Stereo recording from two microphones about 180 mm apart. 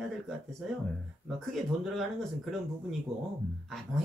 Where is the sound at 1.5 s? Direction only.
Centre (ahead or behind).